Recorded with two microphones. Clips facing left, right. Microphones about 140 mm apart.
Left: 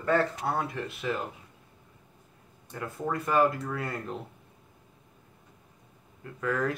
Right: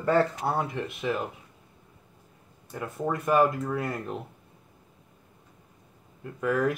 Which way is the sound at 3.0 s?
10° right (ahead or behind).